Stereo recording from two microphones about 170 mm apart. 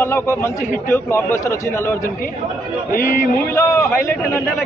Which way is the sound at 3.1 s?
15° left (ahead or behind).